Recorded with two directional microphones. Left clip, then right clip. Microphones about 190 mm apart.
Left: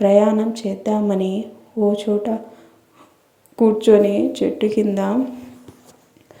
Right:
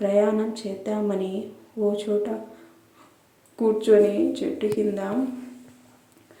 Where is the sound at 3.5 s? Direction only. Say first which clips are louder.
Left 5 dB; 30° left (ahead or behind).